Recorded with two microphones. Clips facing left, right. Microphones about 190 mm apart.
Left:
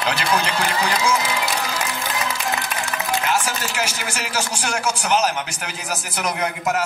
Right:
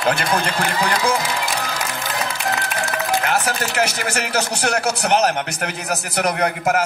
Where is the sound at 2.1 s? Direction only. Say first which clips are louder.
Right 2 dB; 60° right (ahead or behind).